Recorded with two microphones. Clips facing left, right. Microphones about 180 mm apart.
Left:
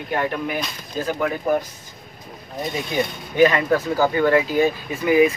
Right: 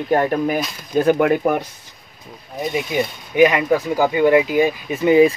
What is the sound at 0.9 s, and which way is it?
Speech, 65° right (ahead or behind).